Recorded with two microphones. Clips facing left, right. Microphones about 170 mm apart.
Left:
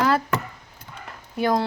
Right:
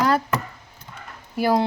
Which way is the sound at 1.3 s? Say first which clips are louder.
Right 2 dB; 5° right (ahead or behind).